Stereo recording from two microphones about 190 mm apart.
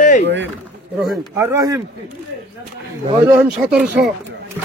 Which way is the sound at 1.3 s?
15° right (ahead or behind).